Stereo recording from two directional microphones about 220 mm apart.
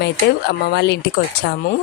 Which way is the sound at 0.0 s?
50° left (ahead or behind).